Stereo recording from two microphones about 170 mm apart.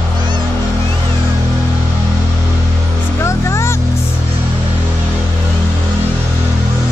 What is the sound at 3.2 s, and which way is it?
Music, 15° left (ahead or behind).